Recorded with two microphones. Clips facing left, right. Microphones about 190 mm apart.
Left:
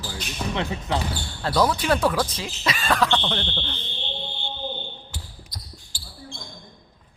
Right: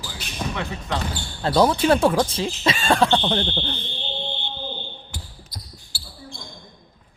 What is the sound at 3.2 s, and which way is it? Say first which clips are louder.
Speech: right 5 dB; 45° right (ahead or behind).